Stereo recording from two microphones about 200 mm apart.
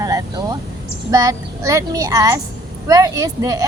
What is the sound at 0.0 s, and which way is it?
Vehicle, 15° right (ahead or behind).